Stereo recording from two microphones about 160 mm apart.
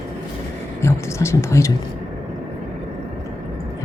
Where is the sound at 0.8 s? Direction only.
15° left (ahead or behind).